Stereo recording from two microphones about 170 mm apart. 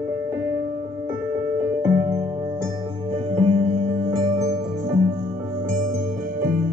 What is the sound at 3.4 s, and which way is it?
Music, 35° right (ahead or behind).